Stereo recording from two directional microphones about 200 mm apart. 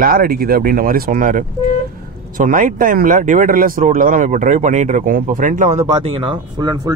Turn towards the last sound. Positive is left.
turn(degrees=-20)  # may be behind; listen again after turning